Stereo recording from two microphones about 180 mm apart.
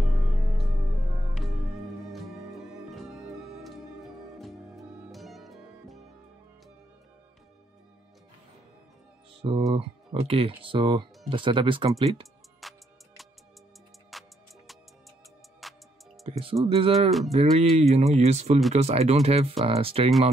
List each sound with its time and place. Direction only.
1.3 s music: centre (ahead or behind)
9.4 s speech: 30° right (ahead or behind)
12.6 s music: centre (ahead or behind)
14.1 s music: centre (ahead or behind)
15.6 s music: centre (ahead or behind)
16.3 s speech: 30° right (ahead or behind)